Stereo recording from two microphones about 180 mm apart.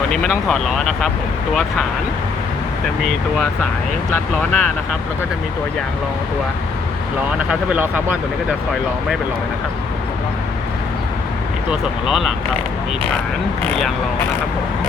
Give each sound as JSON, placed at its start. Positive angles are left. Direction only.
{"t": 0.1, "sound": "speech", "side_deg": 5}
{"t": 4.1, "sound": "speech", "side_deg": 5}
{"t": 7.3, "sound": "speech", "side_deg": -10}
{"t": 12.0, "sound": "speech", "side_deg": 0}